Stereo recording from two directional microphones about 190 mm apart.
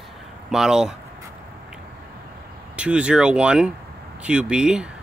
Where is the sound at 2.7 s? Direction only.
5° right (ahead or behind).